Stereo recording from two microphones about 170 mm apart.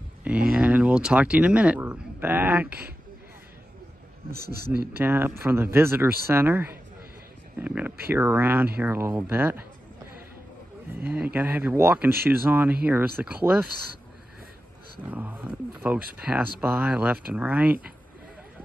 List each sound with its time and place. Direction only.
0.2 s speech: 5° right (ahead or behind)
4.3 s speech: 65° right (ahead or behind)
4.9 s speech: 15° right (ahead or behind)
11.1 s speech: 10° right (ahead or behind)
15.0 s speech: 10° right (ahead or behind)